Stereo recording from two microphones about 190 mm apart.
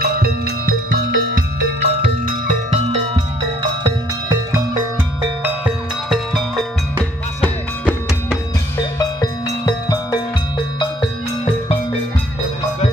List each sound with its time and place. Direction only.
0.0 s music: 50° right (ahead or behind)
3.8 s music: 20° right (ahead or behind)
5.4 s music: centre (ahead or behind)
8.9 s music: 20° left (ahead or behind)